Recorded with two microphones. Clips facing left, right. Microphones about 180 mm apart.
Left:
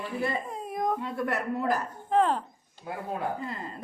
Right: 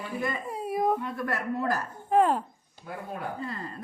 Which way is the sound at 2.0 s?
10° right (ahead or behind).